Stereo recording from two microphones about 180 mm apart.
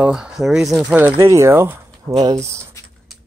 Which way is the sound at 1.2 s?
15° right (ahead or behind).